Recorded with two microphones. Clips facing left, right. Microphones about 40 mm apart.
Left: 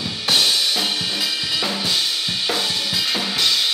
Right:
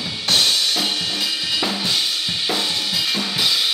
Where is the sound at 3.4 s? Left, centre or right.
Centre.